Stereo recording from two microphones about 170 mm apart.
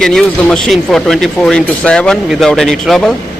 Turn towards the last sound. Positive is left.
turn(degrees=0)  # may be behind; listen again after turning